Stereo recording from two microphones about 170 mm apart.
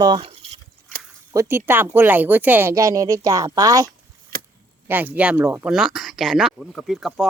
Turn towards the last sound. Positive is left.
turn(degrees=0)  # may be behind; listen again after turning